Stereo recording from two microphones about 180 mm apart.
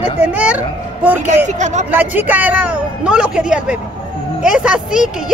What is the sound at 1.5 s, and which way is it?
Speech, 40° right (ahead or behind).